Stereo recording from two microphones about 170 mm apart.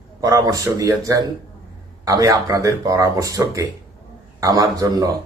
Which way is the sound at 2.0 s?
20° right (ahead or behind).